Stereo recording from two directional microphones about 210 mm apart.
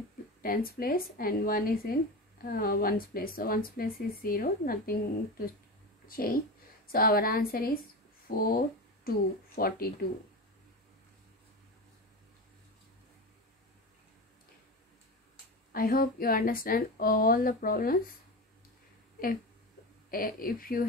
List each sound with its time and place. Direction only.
0.4 s speech: 45° left (ahead or behind)
6.0 s speech: 45° left (ahead or behind)
15.7 s speech: 45° left (ahead or behind)
20.1 s speech: 45° left (ahead or behind)